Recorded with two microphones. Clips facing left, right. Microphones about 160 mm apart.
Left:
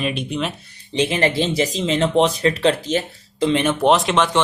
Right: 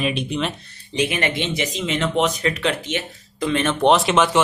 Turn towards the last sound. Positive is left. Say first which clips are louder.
# even
turn(degrees=0)  # may be behind; listen again after turning